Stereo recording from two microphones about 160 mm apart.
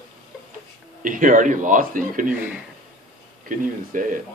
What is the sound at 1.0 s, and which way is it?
Speech, 55° right (ahead or behind).